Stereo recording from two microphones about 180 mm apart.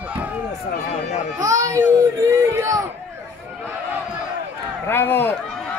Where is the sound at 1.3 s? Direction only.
20° right (ahead or behind).